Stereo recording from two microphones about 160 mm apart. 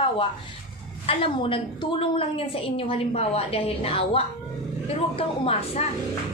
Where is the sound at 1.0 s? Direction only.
35° left (ahead or behind).